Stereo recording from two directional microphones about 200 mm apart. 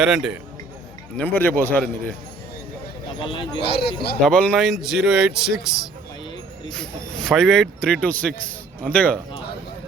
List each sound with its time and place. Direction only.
0.0 s speech: 5° right (ahead or behind)
1.2 s a man's voice: 10° left (ahead or behind)
3.2 s speech: 25° left (ahead or behind)
4.2 s a man's voice: 5° left (ahead or behind)